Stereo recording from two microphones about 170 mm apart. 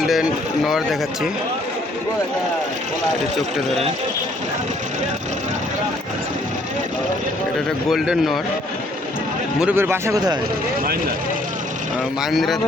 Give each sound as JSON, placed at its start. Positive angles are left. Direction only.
{"t": 0.0, "sound": "speech", "side_deg": 0}
{"t": 7.9, "sound": "speech", "side_deg": 0}
{"t": 9.6, "sound": "speech", "side_deg": -10}
{"t": 12.2, "sound": "speech", "side_deg": 0}